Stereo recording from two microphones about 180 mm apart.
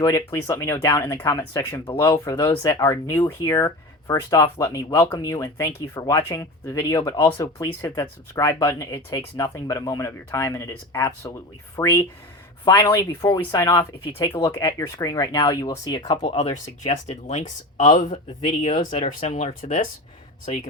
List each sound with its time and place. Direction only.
0.0 s speech: 20° left (ahead or behind); by 20.7 s 45° left (ahead or behind)